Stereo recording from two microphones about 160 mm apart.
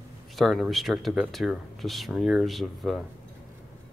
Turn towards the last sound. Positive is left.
turn(degrees=0)  # may be behind; listen again after turning